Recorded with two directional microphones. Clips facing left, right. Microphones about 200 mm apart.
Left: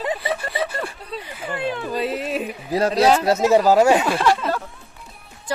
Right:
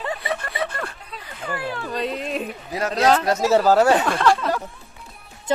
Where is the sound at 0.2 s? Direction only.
Centre (ahead or behind).